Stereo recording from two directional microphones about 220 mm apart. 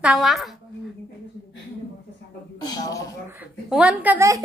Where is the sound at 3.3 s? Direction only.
5° right (ahead or behind).